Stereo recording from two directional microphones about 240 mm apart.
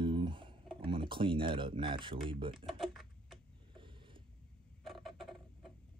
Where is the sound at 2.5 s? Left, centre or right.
Centre.